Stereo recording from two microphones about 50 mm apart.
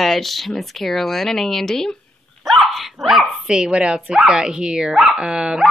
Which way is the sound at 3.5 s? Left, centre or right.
Centre.